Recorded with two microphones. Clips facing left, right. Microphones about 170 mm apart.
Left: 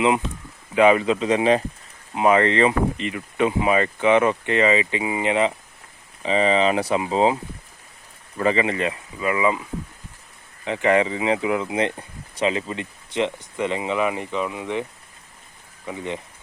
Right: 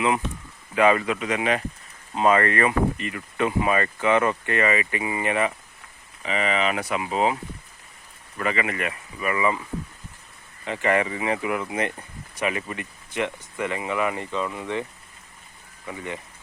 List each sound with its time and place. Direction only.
0.7 s speech: 20° left (ahead or behind)
2.1 s speech: 15° left (ahead or behind)
8.4 s speech: 25° left (ahead or behind)
10.7 s speech: 20° left (ahead or behind)
15.9 s speech: 20° left (ahead or behind)